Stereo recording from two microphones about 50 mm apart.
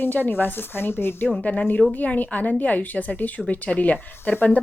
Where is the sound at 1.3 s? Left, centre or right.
Left.